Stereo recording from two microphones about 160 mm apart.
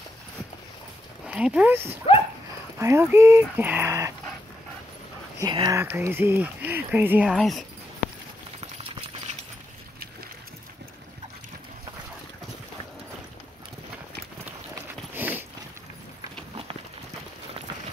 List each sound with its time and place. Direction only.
1.2 s speech: 5° right (ahead or behind)
5.4 s speech: 25° right (ahead or behind)
5.8 s speech: 15° right (ahead or behind)
14.4 s clip-clop: 10° right (ahead or behind)